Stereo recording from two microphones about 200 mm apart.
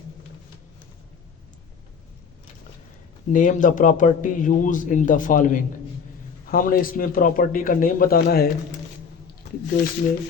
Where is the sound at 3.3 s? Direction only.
40° left (ahead or behind).